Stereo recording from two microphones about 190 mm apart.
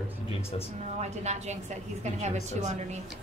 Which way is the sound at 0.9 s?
35° right (ahead or behind).